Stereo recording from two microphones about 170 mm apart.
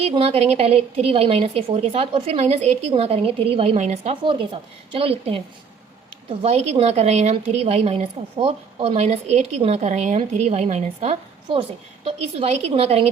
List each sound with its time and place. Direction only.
0.0 s a woman's voice: 35° right (ahead or behind)
6.4 s a woman's voice: 35° right (ahead or behind)